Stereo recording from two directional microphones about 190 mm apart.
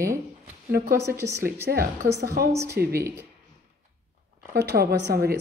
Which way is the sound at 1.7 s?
55° right (ahead or behind).